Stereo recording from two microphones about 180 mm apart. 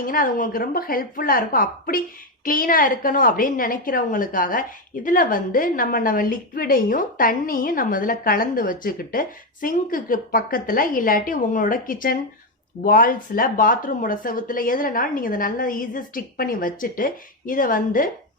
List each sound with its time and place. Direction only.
0.0 s a woman's voice: 50° left (ahead or behind)